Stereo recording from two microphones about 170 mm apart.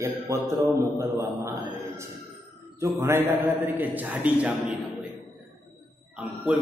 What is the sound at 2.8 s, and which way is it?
A man's voice, 15° right (ahead or behind).